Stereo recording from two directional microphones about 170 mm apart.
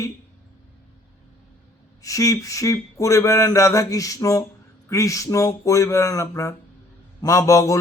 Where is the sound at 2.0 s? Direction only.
20° left (ahead or behind).